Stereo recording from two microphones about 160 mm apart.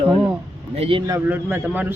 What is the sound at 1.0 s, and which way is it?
Speech, 15° right (ahead or behind).